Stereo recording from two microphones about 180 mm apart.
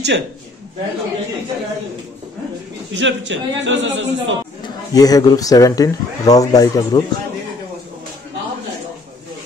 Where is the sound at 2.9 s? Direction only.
90° right.